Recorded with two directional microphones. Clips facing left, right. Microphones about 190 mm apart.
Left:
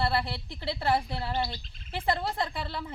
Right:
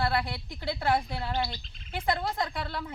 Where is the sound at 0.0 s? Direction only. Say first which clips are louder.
Even; centre (ahead or behind).